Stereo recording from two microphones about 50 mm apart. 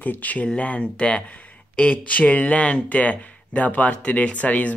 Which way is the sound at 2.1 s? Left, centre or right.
Left.